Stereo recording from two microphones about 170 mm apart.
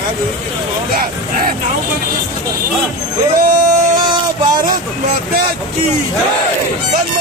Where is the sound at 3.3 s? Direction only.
55° right (ahead or behind).